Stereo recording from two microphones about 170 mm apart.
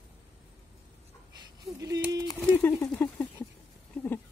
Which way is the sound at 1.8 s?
20° right (ahead or behind).